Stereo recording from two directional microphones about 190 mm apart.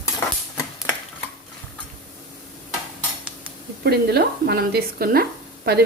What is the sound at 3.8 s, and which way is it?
Speech, 60° right (ahead or behind).